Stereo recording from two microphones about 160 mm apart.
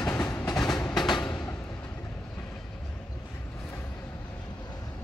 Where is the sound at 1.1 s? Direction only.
20° left (ahead or behind).